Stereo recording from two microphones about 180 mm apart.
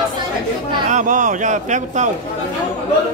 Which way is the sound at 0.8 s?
45° right (ahead or behind).